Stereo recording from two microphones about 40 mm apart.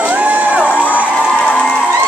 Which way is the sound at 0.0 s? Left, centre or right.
Right.